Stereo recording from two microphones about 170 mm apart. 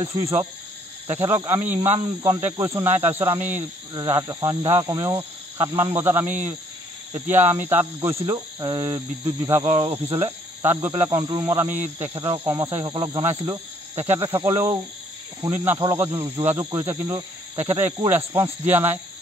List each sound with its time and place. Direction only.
0.0 s speech: 20° right (ahead or behind)
3.9 s cricket: 20° right (ahead or behind)
7.2 s speech: 10° right (ahead or behind)
9.4 s cricket: 20° right (ahead or behind)
9.7 s cricket: 30° right (ahead or behind)
10.6 s speech: 15° right (ahead or behind)
12.9 s cricket: 25° right (ahead or behind)
13.5 s speech: 15° right (ahead or behind)
15.8 s cricket: 20° right (ahead or behind)
17.9 s speech: 20° right (ahead or behind)